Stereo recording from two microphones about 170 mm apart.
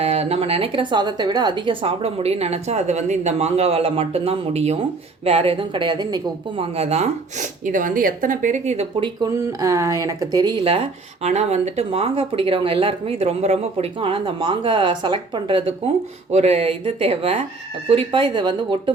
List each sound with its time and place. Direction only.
0.0 s speech: 40° right (ahead or behind)
6.7 s speech: 35° right (ahead or behind)
9.2 s speech: 20° right (ahead or behind)
10.6 s speech: 35° right (ahead or behind)